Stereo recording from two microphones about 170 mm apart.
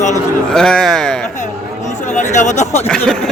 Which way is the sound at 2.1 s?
45° left (ahead or behind).